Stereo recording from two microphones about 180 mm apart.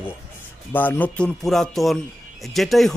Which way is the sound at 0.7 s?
10° left (ahead or behind).